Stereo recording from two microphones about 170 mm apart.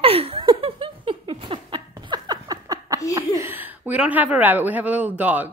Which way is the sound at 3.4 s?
10° right (ahead or behind).